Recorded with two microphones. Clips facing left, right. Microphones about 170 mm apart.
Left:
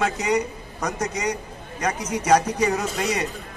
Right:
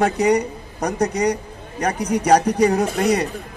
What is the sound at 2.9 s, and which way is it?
Speech, 55° right (ahead or behind).